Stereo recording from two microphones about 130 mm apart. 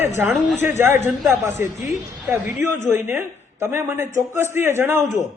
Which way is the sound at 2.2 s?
15° right (ahead or behind).